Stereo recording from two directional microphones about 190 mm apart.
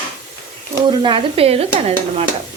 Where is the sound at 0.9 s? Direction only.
25° right (ahead or behind).